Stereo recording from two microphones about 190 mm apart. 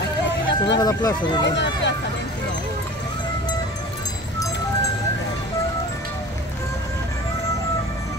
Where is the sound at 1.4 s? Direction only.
65° left (ahead or behind).